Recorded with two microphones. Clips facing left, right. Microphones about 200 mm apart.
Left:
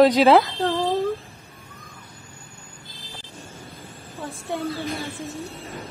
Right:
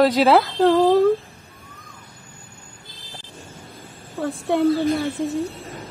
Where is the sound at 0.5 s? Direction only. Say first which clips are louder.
Right 8 dB; 60° right (ahead or behind).